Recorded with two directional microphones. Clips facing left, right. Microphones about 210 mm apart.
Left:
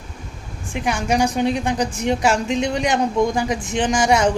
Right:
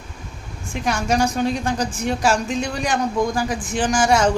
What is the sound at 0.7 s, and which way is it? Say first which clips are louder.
A woman's voice: even; 15° left (ahead or behind).